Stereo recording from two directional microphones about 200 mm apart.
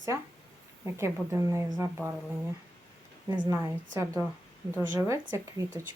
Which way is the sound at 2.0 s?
Centre (ahead or behind).